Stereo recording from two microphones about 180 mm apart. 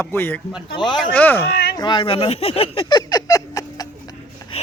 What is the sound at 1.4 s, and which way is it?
Speech, 65° left (ahead or behind).